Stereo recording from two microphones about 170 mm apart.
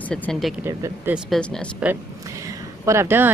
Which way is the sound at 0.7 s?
15° right (ahead or behind).